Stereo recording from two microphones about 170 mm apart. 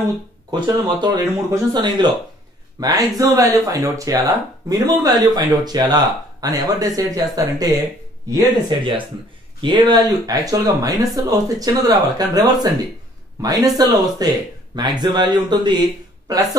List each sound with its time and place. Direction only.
0.5 s speech: 25° right (ahead or behind)